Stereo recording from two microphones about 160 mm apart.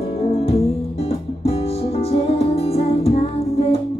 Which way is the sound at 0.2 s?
40° left (ahead or behind).